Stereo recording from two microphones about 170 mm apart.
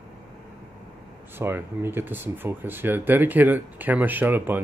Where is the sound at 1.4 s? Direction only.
15° right (ahead or behind).